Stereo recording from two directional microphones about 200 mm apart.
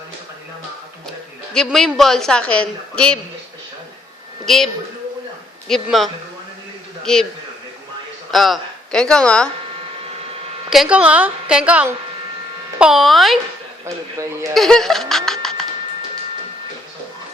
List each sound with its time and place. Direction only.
1.5 s a woman's voice: centre (ahead or behind)
4.4 s a woman's voice: centre (ahead or behind)
8.3 s speech: centre (ahead or behind)
10.7 s a woman's voice: 5° right (ahead or behind)
13.8 s a woman's voice: 15° right (ahead or behind)
14.5 s laughter: centre (ahead or behind)